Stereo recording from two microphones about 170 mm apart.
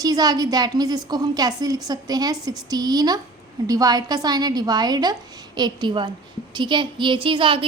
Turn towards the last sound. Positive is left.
turn(degrees=-30)  # may be behind; listen again after turning